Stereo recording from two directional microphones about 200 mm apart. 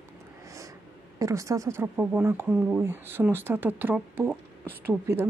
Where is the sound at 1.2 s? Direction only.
15° right (ahead or behind).